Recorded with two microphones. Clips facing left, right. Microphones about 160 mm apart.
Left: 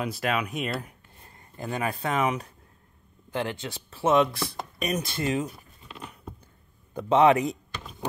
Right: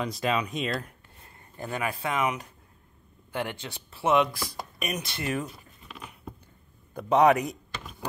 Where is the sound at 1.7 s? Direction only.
35° left (ahead or behind).